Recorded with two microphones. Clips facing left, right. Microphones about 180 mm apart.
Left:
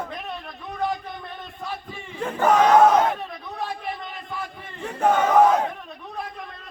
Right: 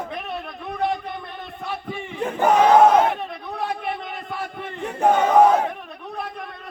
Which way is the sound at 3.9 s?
65° right (ahead or behind).